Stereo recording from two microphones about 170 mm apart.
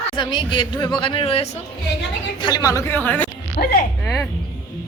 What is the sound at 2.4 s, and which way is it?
Speech, 20° left (ahead or behind).